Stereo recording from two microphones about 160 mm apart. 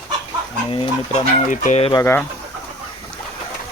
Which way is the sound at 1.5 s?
50° left (ahead or behind).